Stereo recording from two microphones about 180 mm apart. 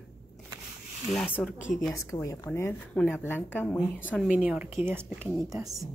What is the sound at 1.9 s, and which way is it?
A woman's voice, 15° left (ahead or behind).